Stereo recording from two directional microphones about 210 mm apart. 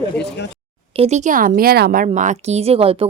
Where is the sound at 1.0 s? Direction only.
35° right (ahead or behind).